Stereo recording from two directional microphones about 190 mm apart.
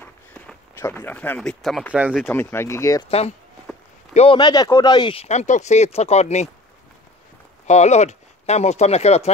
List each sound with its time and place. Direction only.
0.0 s speech: 10° left (ahead or behind); by 2.2 s 5° right (ahead or behind)
2.2 s speech: 10° left (ahead or behind)
3.1 s speech: 35° left (ahead or behind)
3.7 s walk: centre (ahead or behind)
4.1 s speech: 30° left (ahead or behind)
7.6 s speech: 35° left (ahead or behind)